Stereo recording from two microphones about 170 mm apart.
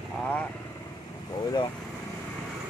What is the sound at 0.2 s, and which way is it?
Speech, 10° left (ahead or behind).